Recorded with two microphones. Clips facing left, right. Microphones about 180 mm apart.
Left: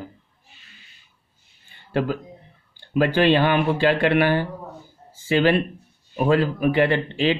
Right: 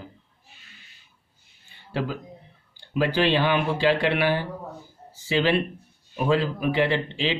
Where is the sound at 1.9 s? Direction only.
55° left (ahead or behind).